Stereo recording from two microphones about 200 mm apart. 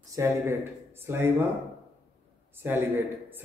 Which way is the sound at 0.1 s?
15° right (ahead or behind).